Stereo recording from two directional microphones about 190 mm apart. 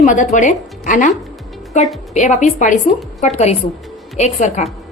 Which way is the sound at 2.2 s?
40° left (ahead or behind).